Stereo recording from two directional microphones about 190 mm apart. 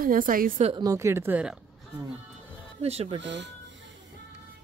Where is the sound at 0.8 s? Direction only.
15° right (ahead or behind).